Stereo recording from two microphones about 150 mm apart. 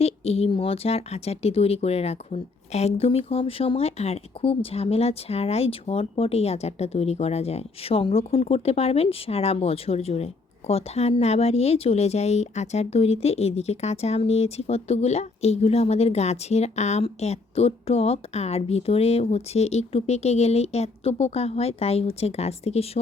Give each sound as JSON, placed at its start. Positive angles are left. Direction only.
{"t": 0.0, "sound": "speech", "side_deg": 40}